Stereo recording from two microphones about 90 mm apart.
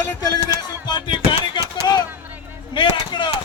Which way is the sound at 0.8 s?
55° left (ahead or behind).